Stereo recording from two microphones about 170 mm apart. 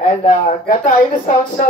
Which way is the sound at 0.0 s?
40° left (ahead or behind).